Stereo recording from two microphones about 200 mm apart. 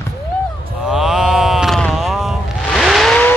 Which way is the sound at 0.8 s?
Centre (ahead or behind).